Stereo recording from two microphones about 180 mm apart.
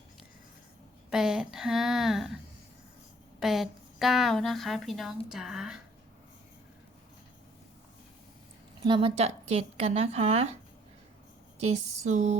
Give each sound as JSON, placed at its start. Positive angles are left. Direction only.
{"t": 1.1, "sound": "a woman's voice", "side_deg": -5}
{"t": 3.4, "sound": "a woman's voice", "side_deg": 0}
{"t": 8.8, "sound": "speech", "side_deg": -25}
{"t": 11.6, "sound": "speech", "side_deg": -40}